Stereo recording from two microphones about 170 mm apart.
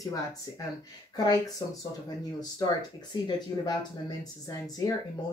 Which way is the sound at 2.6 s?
25° left (ahead or behind).